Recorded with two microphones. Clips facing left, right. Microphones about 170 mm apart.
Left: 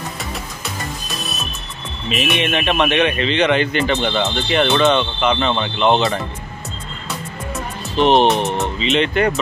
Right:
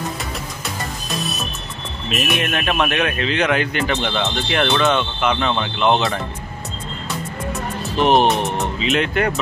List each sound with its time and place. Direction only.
1.1 s music: centre (ahead or behind)
2.0 s speech: centre (ahead or behind)
8.0 s speech: 5° right (ahead or behind)